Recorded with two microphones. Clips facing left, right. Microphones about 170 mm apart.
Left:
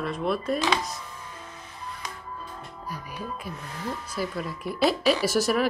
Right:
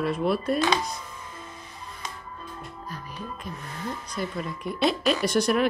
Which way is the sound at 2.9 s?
10° left (ahead or behind).